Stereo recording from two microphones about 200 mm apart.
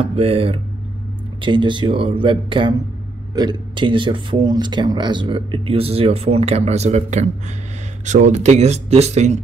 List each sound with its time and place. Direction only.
0.0 s speech: 30° right (ahead or behind)